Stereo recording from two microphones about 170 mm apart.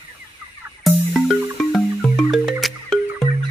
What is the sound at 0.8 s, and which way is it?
Music, centre (ahead or behind).